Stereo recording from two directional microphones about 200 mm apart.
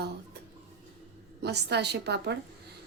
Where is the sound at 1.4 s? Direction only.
55° right (ahead or behind).